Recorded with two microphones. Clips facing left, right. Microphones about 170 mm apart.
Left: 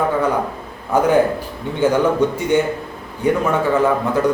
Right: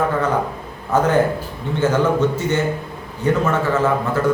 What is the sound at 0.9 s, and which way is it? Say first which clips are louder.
Speech: left 2 dB; 10° left (ahead or behind).